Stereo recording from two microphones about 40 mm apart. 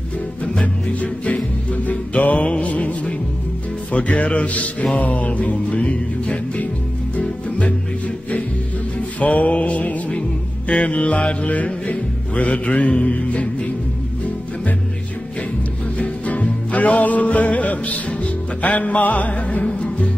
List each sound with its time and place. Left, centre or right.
0.4 s music: left
9.2 s music: left
16.0 s music: left